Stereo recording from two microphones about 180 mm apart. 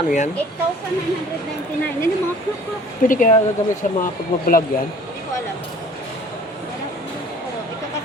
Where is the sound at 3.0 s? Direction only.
45° left (ahead or behind).